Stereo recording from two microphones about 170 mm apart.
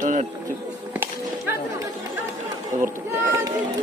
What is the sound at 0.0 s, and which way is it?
Music, 45° right (ahead or behind).